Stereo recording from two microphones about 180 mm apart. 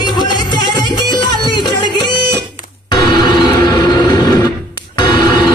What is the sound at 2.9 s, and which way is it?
Music, 25° left (ahead or behind).